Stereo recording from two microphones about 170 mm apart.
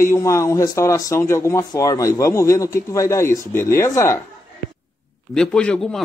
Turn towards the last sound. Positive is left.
turn(degrees=5)  # may be behind; listen again after turning